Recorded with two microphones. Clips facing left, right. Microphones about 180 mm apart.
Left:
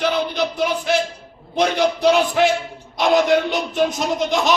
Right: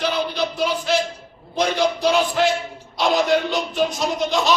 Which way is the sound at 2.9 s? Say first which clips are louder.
Left 3 dB; 20° left (ahead or behind).